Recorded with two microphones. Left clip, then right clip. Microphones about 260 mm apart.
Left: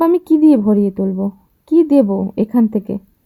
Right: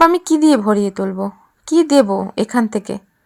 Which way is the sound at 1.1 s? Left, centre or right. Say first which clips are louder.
Even; right.